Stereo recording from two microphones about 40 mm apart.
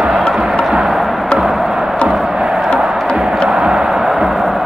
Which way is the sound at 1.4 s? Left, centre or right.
Centre.